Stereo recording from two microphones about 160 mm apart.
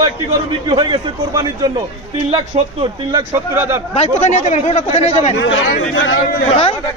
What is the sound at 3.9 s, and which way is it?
Speech, 45° left (ahead or behind).